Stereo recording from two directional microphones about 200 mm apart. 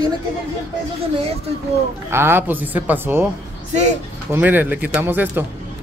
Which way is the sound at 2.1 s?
10° right (ahead or behind).